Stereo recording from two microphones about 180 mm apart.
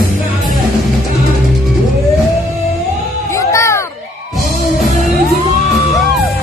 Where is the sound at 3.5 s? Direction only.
15° left (ahead or behind).